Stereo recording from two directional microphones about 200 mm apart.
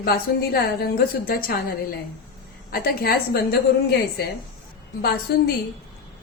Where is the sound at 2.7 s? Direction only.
50° left (ahead or behind).